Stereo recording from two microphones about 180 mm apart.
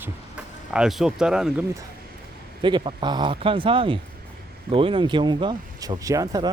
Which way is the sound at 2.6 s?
25° right (ahead or behind).